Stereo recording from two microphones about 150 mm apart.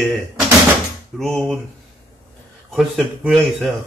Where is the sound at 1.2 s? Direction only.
5° left (ahead or behind).